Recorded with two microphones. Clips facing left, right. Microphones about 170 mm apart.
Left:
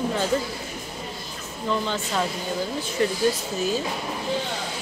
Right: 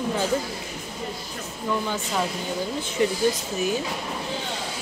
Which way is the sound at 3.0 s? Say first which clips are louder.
Right 1 dB; 15° right (ahead or behind).